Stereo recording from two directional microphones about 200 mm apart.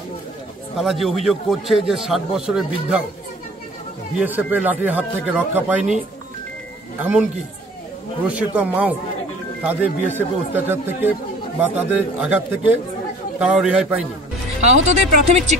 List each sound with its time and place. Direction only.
0.7 s a man's voice: centre (ahead or behind)
4.2 s speech: 10° right (ahead or behind)
7.0 s a man's voice: 5° right (ahead or behind)
8.4 s a man's voice: 10° right (ahead or behind)
14.9 s speech: 35° right (ahead or behind)